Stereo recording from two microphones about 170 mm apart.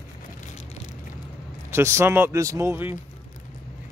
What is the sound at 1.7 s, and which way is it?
Speech, 15° right (ahead or behind).